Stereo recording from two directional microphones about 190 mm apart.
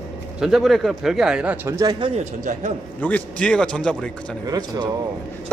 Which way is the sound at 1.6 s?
15° right (ahead or behind).